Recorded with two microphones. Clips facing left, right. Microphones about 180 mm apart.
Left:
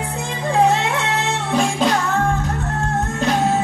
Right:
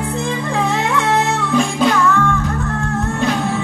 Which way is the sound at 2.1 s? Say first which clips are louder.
Right 3 dB; 35° left (ahead or behind).